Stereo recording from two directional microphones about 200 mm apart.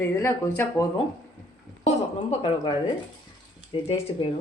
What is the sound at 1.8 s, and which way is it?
A woman's voice, 25° left (ahead or behind).